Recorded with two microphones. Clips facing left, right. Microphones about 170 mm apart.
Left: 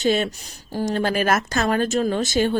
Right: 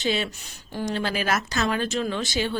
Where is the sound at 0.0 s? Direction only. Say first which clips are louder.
Left 6 dB; 50° left (ahead or behind).